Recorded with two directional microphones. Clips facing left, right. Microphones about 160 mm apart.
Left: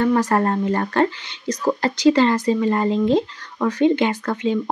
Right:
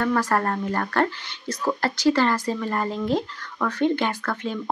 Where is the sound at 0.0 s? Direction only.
20° left (ahead or behind).